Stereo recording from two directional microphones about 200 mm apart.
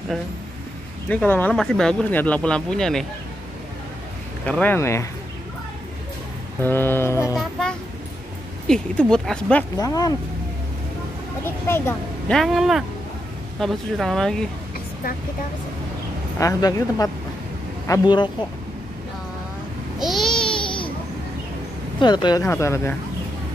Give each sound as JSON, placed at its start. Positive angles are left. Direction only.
{"t": 1.0, "sound": "speech", "side_deg": 5}
{"t": 4.5, "sound": "speech", "side_deg": 10}
{"t": 6.6, "sound": "speech", "side_deg": 10}
{"t": 7.3, "sound": "speech", "side_deg": 0}
{"t": 9.8, "sound": "speech", "side_deg": 20}
{"t": 11.4, "sound": "speech", "side_deg": 10}
{"t": 16.3, "sound": "speech", "side_deg": 15}
{"t": 20.0, "sound": "babbling", "side_deg": 0}
{"t": 22.0, "sound": "speech", "side_deg": 20}